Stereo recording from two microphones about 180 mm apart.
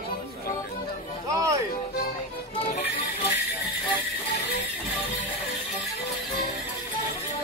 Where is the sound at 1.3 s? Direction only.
20° right (ahead or behind).